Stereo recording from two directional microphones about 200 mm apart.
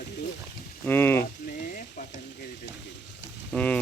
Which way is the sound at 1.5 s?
40° left (ahead or behind).